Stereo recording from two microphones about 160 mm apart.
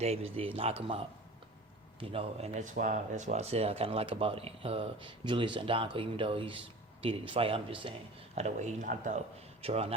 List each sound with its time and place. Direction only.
0.0 s speech: 40° right (ahead or behind)
8.4 s speech: 45° right (ahead or behind)
9.6 s a man's voice: 40° right (ahead or behind)